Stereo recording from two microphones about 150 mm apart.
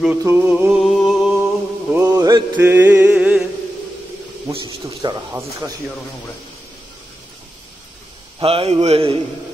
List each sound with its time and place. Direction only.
0.2 s music: 15° right (ahead or behind)
2.1 s mantra: 25° right (ahead or behind)
2.5 s music: 10° right (ahead or behind)
4.5 s a sound: 35° right (ahead or behind)
8.4 s a man's voice: 40° right (ahead or behind)